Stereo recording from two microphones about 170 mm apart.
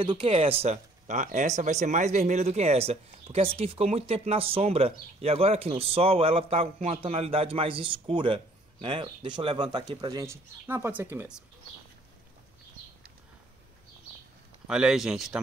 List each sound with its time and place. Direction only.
0.0 s speech: 30° right (ahead or behind); by 11.4 s 10° right (ahead or behind)
14.7 s speech: 5° right (ahead or behind)